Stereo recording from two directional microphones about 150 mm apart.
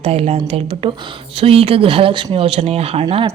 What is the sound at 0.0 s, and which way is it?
Speech, 45° right (ahead or behind).